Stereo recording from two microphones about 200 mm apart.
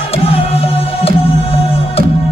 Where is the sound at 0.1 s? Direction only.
30° left (ahead or behind).